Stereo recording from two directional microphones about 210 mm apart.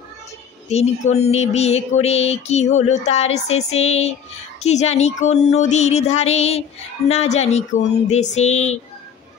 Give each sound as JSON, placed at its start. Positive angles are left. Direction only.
{"t": 0.7, "sound": "speech", "side_deg": 30}